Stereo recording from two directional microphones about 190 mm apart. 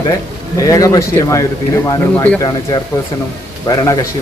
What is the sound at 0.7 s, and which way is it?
A man's voice, 15° left (ahead or behind).